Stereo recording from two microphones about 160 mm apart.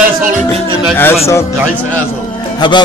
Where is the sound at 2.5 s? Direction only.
30° left (ahead or behind).